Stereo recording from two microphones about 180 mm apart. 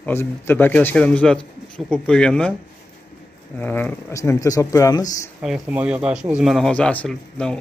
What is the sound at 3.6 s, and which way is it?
A man's voice, 10° left (ahead or behind).